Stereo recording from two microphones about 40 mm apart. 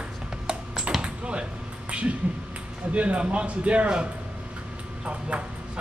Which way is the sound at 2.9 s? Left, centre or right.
Right.